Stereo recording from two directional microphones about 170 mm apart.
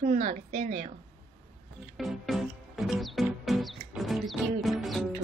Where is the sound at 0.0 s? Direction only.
50° right (ahead or behind).